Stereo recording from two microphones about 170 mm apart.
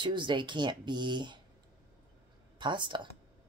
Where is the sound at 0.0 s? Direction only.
30° right (ahead or behind).